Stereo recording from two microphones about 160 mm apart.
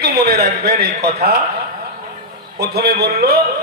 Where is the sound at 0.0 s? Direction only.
80° right.